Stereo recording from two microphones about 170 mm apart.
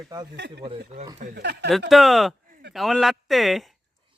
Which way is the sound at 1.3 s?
80° right.